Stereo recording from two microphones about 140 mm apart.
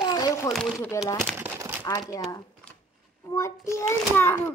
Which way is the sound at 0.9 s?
20° left (ahead or behind).